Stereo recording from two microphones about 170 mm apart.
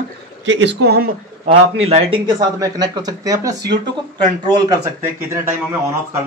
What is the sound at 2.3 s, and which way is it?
Speech, 25° right (ahead or behind).